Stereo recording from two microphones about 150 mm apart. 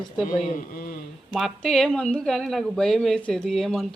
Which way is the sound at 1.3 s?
5° left (ahead or behind).